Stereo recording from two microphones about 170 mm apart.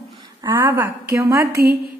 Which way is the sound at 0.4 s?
15° right (ahead or behind).